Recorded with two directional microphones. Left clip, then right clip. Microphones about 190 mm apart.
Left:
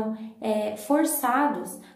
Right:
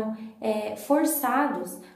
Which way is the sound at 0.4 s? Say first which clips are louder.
Left 1 dB; 10° left (ahead or behind).